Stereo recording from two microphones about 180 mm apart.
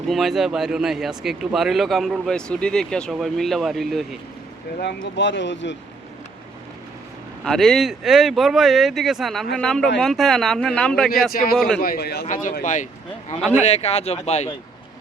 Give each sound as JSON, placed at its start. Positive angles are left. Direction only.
{"t": 0.1, "sound": "speech", "side_deg": 0}
{"t": 5.1, "sound": "speech", "side_deg": 90}
{"t": 7.4, "sound": "speech", "side_deg": 0}
{"t": 11.3, "sound": "a man's voice", "side_deg": 55}
{"t": 12.2, "sound": "speech", "side_deg": 45}